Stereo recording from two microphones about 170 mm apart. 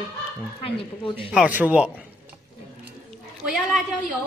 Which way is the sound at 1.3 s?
5° right (ahead or behind).